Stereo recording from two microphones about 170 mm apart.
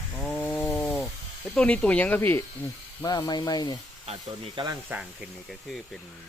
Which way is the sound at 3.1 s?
25° left (ahead or behind).